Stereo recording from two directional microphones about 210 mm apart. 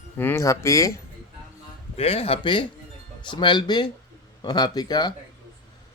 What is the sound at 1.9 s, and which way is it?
Speech, 30° left (ahead or behind).